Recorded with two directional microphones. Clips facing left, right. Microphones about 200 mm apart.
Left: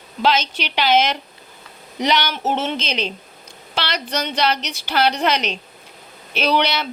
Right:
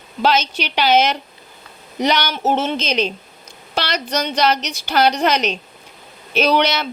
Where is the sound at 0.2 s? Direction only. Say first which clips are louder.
Right 2 dB; 40° right (ahead or behind).